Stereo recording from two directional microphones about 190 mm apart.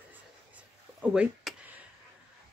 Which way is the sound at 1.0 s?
5° right (ahead or behind).